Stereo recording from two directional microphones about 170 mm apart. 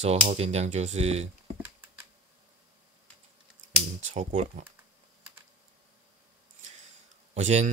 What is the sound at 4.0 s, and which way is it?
Speech, 45° right (ahead or behind).